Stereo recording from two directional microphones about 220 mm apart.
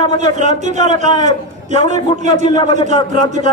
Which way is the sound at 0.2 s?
30° right (ahead or behind).